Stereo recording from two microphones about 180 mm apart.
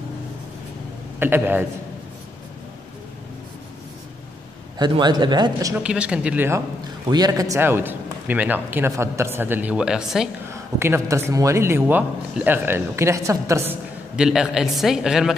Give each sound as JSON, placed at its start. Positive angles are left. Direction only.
{"t": 1.2, "sound": "speech", "side_deg": -10}
{"t": 4.7, "sound": "speech", "side_deg": -25}
{"t": 5.8, "sound": "speech", "side_deg": -5}
{"t": 7.1, "sound": "speech", "side_deg": -20}
{"t": 10.8, "sound": "speech", "side_deg": -15}